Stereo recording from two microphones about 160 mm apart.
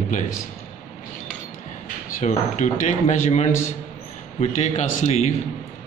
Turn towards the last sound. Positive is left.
turn(degrees=45)  # may be behind; listen again after turning